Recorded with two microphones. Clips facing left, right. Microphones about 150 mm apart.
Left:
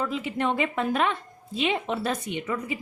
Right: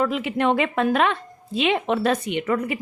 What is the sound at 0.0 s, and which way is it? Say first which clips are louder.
A woman's voice: right 6 dB; 75° right (ahead or behind).